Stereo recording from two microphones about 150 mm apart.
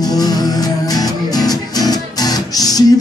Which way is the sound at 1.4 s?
25° left (ahead or behind).